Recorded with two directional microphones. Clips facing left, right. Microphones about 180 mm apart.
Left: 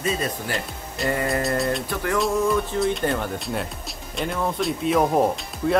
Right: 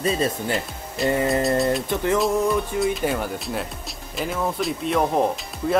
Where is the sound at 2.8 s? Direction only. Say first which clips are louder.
Even; 5° right (ahead or behind).